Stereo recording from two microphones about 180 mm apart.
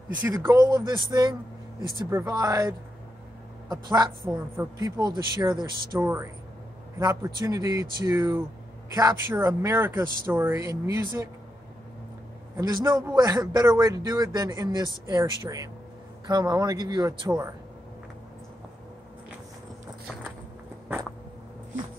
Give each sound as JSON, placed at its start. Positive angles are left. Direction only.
{"t": 0.2, "sound": "a man's voice", "side_deg": -15}
{"t": 1.8, "sound": "speech", "side_deg": 20}
{"t": 2.0, "sound": "a man's voice", "side_deg": -15}
{"t": 12.5, "sound": "a man's voice", "side_deg": -20}